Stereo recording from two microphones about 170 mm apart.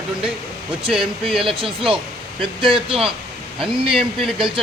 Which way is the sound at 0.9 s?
5° right (ahead or behind).